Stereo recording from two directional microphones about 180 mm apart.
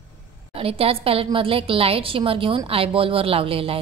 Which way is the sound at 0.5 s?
30° right (ahead or behind).